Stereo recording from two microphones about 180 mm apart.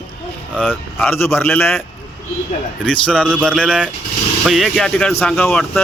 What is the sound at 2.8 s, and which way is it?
A man's voice, 5° left (ahead or behind).